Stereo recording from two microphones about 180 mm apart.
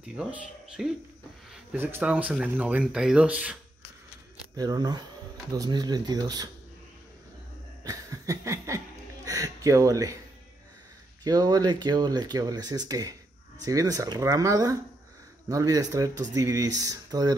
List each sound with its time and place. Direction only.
0.0 s speech: 5° right (ahead or behind)
4.6 s speech: 20° right (ahead or behind)
7.8 s laughter: 20° right (ahead or behind)
11.2 s speech: 20° right (ahead or behind)